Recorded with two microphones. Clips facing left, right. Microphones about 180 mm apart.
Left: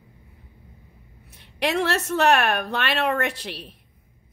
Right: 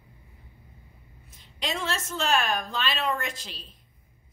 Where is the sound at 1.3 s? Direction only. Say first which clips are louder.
Left 8 dB; 70° left (ahead or behind).